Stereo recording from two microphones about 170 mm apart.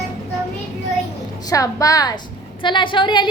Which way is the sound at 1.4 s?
20° left (ahead or behind).